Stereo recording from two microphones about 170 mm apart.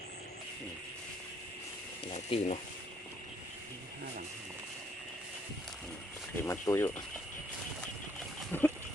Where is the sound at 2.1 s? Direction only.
35° left (ahead or behind).